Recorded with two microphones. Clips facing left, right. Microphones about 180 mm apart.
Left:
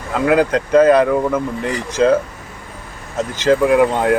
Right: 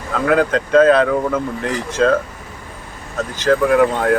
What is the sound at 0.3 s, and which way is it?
Speech, 10° left (ahead or behind).